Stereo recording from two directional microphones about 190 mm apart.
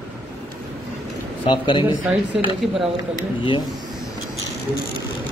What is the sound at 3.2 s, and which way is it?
Speech, 25° left (ahead or behind).